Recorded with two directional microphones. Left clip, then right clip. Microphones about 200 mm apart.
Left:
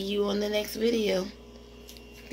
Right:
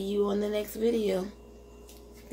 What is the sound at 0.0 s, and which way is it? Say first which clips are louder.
Speech: even; 5° left (ahead or behind).